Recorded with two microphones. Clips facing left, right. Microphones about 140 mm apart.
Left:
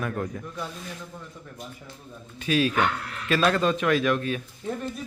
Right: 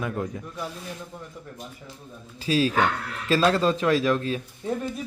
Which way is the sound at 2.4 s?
30° right (ahead or behind).